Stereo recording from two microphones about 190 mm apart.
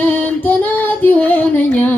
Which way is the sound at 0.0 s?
10° left (ahead or behind).